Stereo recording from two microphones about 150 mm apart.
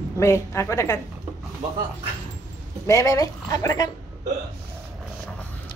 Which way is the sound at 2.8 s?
20° left (ahead or behind).